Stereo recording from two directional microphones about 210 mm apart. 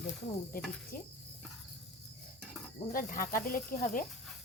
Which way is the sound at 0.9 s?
40° left (ahead or behind).